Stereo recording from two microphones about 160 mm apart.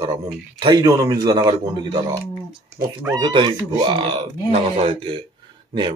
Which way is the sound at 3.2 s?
30° right (ahead or behind).